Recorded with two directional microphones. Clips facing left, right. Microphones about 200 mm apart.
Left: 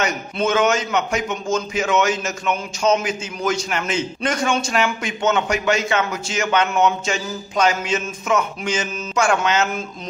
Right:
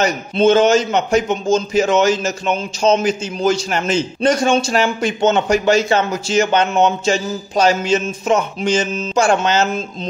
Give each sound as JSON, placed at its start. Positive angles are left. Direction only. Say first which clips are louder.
{"t": 0.0, "sound": "a man's voice", "louder": "right 7 dB", "side_deg": -30}